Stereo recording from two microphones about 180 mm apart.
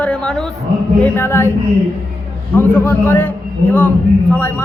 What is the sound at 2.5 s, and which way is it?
A man's voice, 10° left (ahead or behind).